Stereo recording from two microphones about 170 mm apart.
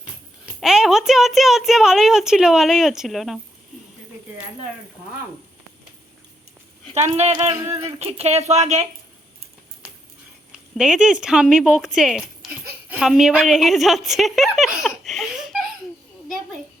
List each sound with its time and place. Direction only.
0.6 s a woman's voice: 5° right (ahead or behind)
6.9 s speech: 40° right (ahead or behind)
10.8 s a woman's voice: 5° right (ahead or behind)